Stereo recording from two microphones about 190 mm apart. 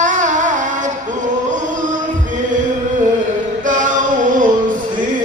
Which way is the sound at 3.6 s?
45° right (ahead or behind).